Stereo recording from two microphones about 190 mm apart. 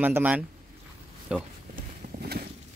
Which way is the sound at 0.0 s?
10° right (ahead or behind).